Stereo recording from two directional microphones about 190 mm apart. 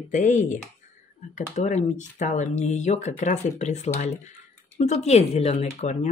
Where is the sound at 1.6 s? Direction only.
40° left (ahead or behind).